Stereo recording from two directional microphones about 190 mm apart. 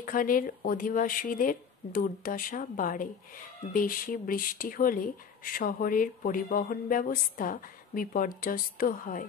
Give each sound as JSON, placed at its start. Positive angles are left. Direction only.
{"t": 0.0, "sound": "speech", "side_deg": 45}